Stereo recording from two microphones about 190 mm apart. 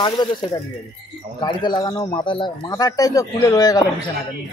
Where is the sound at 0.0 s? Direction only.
25° left (ahead or behind).